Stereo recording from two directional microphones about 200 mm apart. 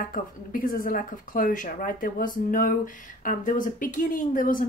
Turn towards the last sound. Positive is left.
turn(degrees=40)  # may be behind; listen again after turning